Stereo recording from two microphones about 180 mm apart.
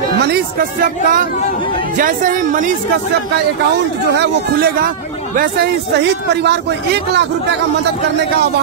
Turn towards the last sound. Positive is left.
turn(degrees=-70)  # may be behind; listen again after turning